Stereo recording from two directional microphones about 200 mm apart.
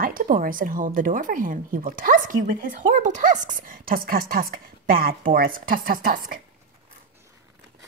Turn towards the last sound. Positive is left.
turn(degrees=-45)  # may be behind; listen again after turning